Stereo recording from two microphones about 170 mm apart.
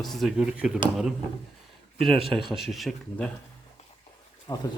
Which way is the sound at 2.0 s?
Centre (ahead or behind).